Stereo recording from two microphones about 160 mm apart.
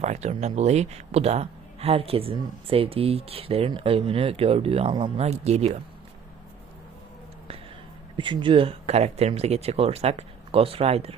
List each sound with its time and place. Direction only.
0.0 s speech: 45° right (ahead or behind)
8.1 s speech: 30° right (ahead or behind)